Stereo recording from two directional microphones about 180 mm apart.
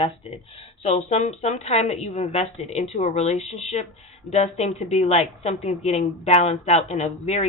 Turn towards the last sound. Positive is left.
turn(degrees=35)  # may be behind; listen again after turning